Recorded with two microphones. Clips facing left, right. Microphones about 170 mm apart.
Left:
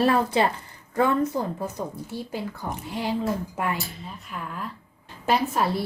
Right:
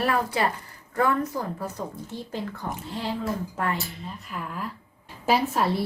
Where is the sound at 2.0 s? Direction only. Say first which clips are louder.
Left 1 dB; 10° left (ahead or behind).